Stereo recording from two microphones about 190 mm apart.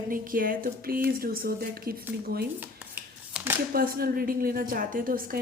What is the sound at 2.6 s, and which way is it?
Shuffling cards, 10° right (ahead or behind).